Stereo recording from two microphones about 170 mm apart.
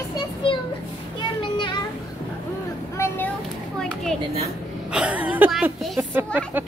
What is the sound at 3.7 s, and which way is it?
Children playing, 5° left (ahead or behind).